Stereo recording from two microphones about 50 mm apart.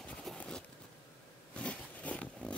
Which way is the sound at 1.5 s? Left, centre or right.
Left.